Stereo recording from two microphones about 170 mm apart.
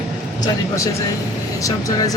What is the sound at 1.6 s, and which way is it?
Speech, 20° left (ahead or behind).